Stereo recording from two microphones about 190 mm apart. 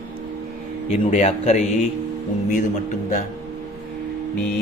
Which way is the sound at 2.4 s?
45° left (ahead or behind).